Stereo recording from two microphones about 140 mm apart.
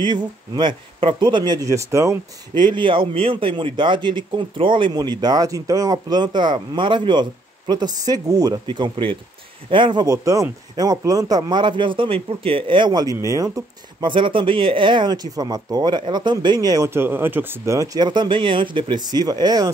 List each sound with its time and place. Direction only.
0.0 s a man's voice: 35° right (ahead or behind)
2.5 s a man's voice: 35° right (ahead or behind)